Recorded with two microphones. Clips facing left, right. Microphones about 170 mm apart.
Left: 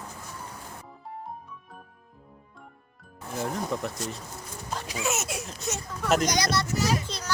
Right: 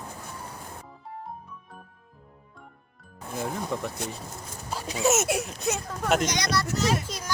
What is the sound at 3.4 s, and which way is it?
Speech, centre (ahead or behind).